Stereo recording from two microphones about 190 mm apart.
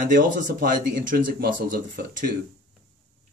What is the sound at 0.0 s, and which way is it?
Speech, 45° right (ahead or behind).